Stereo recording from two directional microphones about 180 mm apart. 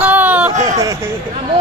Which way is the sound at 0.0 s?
10° right (ahead or behind).